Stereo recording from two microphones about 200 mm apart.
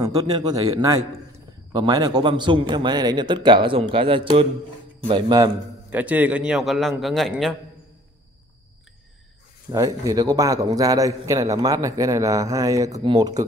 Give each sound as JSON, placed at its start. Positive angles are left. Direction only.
{"t": 0.3, "sound": "a man's voice", "side_deg": -20}
{"t": 5.9, "sound": "a man's voice", "side_deg": -5}
{"t": 9.7, "sound": "a man's voice", "side_deg": -15}